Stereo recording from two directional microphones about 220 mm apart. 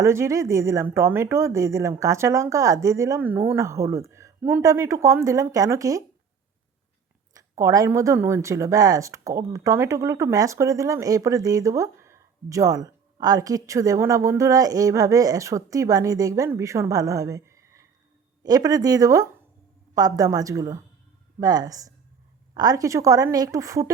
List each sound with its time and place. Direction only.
0.0 s speech: 10° right (ahead or behind)
7.3 s speech: 15° right (ahead or behind)